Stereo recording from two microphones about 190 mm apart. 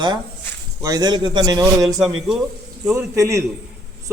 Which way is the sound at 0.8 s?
20° right (ahead or behind).